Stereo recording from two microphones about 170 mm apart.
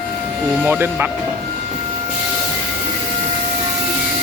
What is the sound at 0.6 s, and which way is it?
Speech, 10° right (ahead or behind).